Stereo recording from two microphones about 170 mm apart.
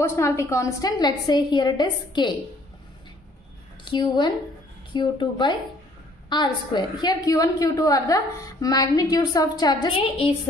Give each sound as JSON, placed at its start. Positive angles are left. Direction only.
{"t": 0.0, "sound": "a woman's voice", "side_deg": 15}
{"t": 3.8, "sound": "a woman's voice", "side_deg": 25}